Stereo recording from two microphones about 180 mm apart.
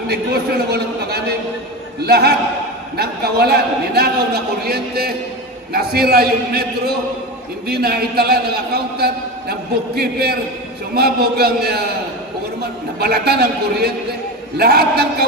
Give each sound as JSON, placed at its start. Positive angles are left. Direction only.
{"t": 0.1, "sound": "a man's voice", "side_deg": -60}
{"t": 13.0, "sound": "a man's voice", "side_deg": -60}